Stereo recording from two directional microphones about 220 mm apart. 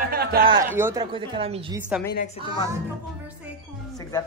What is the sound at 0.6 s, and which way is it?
A woman's voice, 10° right (ahead or behind).